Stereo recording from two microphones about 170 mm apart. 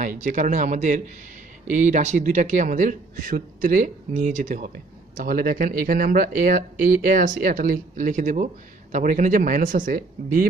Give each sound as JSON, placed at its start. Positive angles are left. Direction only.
{"t": 0.2, "sound": "a man's voice", "side_deg": -50}